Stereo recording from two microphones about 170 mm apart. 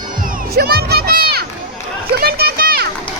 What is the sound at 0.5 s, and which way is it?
Children playing, 70° right (ahead or behind).